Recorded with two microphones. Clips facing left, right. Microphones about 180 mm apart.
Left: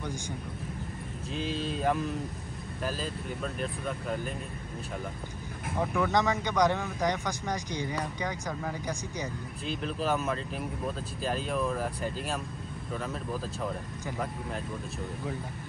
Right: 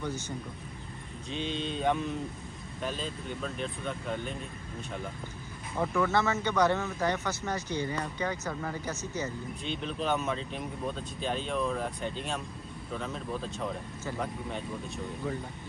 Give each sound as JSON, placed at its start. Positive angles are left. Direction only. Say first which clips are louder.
{"t": 1.3, "sound": "speech", "louder": "left 1 dB", "side_deg": 5}
{"t": 5.8, "sound": "speech", "louder": "even", "side_deg": 5}
{"t": 6.1, "sound": "speech", "louder": "left 3 dB", "side_deg": 15}
{"t": 9.7, "sound": "speech", "louder": "left 1 dB", "side_deg": 5}